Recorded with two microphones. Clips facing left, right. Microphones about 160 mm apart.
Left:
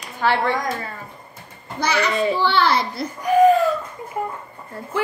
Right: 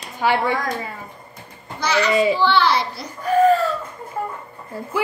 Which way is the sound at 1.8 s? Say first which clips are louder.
Right 2 dB; 55° left (ahead or behind).